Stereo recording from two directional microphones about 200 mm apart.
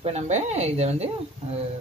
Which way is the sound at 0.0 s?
35° right (ahead or behind).